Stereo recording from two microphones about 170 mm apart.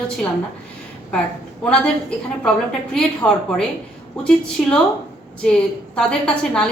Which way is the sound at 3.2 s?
20° left (ahead or behind).